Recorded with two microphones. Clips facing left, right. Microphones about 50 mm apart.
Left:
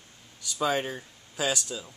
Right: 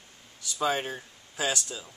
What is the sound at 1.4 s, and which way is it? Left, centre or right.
Speech, right.